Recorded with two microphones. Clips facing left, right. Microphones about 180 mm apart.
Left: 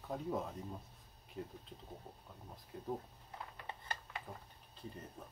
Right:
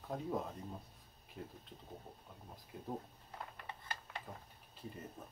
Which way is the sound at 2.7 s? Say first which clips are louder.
Left 1 dB; 5° right (ahead or behind).